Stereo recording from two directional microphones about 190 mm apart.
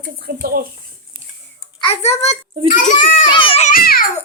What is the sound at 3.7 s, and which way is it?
Speech, 50° left (ahead or behind).